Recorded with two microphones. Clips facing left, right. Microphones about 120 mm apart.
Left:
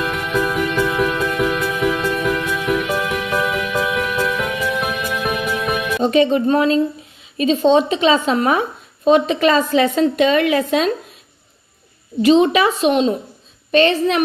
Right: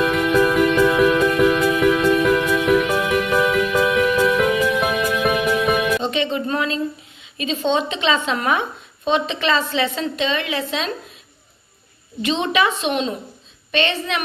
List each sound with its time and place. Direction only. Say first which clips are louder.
0.0 s music: right 4 dB; centre (ahead or behind)
6.0 s a woman's voice: left 8 dB; 40° left (ahead or behind)
12.2 s a woman's voice: left 7 dB; 40° left (ahead or behind)